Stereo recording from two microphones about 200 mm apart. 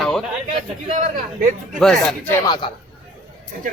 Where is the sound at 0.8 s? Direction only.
35° right (ahead or behind).